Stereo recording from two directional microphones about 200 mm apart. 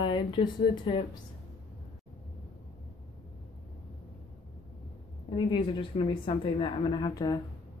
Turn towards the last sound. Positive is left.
turn(degrees=20)  # may be behind; listen again after turning